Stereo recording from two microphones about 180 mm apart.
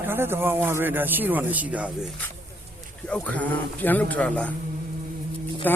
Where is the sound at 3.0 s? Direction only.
5° left (ahead or behind).